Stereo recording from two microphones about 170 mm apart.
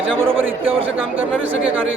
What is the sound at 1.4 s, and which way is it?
Speech, 90° right.